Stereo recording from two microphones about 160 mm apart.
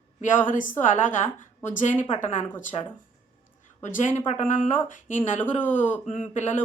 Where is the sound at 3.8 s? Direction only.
50° left (ahead or behind).